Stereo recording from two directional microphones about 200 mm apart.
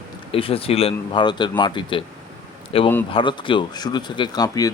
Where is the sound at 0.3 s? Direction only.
30° left (ahead or behind).